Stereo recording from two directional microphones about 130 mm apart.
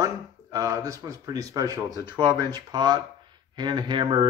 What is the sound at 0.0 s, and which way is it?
Speech, 25° right (ahead or behind).